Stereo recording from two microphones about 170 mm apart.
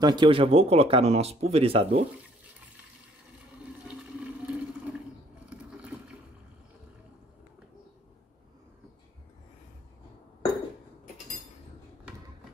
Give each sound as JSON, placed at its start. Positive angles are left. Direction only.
{"t": 0.0, "sound": "speech", "side_deg": -25}
{"t": 3.8, "sound": "toilet flush", "side_deg": -5}
{"t": 5.5, "sound": "a sound", "side_deg": -5}